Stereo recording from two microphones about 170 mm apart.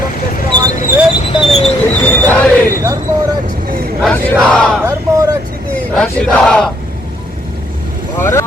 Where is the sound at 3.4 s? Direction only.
60° right (ahead or behind).